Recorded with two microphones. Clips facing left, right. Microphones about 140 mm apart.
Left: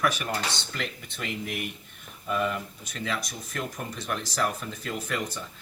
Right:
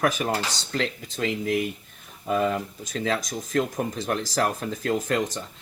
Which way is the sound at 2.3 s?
35° right (ahead or behind).